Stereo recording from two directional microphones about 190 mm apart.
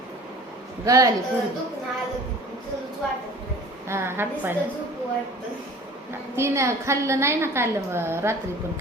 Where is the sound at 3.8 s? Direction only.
15° right (ahead or behind).